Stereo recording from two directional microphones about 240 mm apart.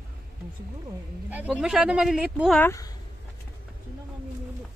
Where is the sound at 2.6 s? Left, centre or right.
Centre.